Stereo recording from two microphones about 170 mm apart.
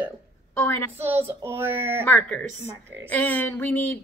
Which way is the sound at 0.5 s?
15° left (ahead or behind).